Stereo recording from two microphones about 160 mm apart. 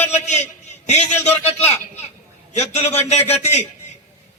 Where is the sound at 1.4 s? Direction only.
40° left (ahead or behind).